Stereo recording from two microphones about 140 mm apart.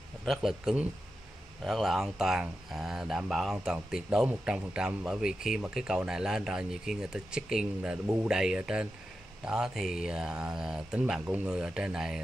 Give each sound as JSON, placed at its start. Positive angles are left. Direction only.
{"t": 0.2, "sound": "speech", "side_deg": 0}